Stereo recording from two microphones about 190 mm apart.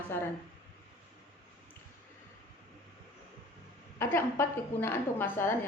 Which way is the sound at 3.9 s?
10° left (ahead or behind).